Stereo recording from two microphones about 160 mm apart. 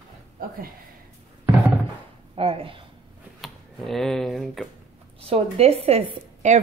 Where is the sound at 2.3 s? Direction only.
35° right (ahead or behind).